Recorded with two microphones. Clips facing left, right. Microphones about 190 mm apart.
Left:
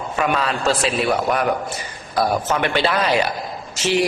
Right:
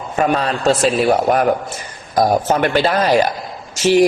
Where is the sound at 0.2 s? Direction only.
40° right (ahead or behind).